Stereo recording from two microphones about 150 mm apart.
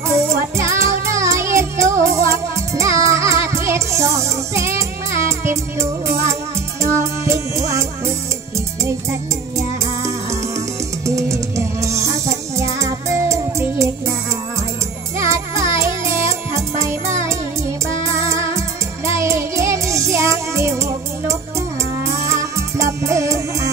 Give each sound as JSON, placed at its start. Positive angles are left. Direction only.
{"t": 0.1, "sound": "music", "side_deg": -20}
{"t": 11.1, "sound": "music", "side_deg": -20}
{"t": 15.1, "sound": "music", "side_deg": -20}